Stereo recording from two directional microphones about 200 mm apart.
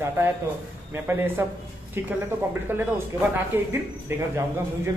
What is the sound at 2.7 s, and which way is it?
Speech, 10° right (ahead or behind).